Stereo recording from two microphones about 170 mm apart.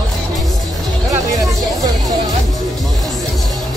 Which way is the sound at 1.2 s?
20° right (ahead or behind).